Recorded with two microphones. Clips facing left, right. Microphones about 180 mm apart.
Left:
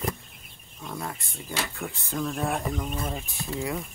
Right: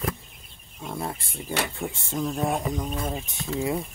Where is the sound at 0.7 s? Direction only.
25° right (ahead or behind).